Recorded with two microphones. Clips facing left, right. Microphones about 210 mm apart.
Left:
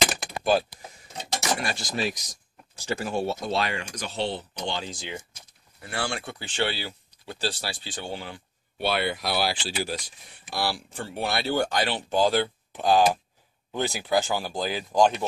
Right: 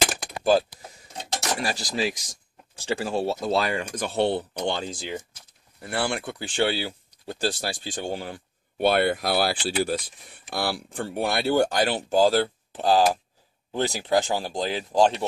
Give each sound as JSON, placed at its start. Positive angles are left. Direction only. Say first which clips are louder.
{"t": 0.4, "sound": "speech", "louder": "right 3 dB", "side_deg": -35}
{"t": 3.9, "sound": "speech", "louder": "right 6 dB", "side_deg": -55}
{"t": 5.9, "sound": "speech", "louder": "right 4 dB", "side_deg": -55}